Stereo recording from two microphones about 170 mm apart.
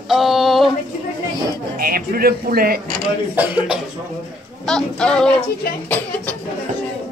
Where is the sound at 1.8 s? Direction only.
60° right (ahead or behind).